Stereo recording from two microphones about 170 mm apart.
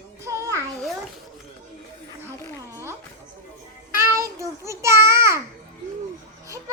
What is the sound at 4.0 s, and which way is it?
Child singing, 15° right (ahead or behind).